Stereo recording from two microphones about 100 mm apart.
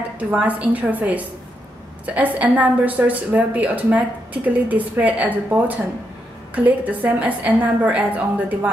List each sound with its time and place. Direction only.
0.2 s a woman's voice: 15° right (ahead or behind)